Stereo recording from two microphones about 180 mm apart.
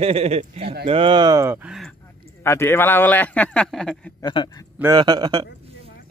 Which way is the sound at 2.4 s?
15° left (ahead or behind).